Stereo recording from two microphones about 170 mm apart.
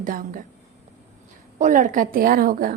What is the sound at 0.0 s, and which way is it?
Speech, 50° right (ahead or behind).